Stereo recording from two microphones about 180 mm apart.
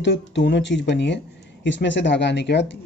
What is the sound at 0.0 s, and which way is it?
Speech, 80° left.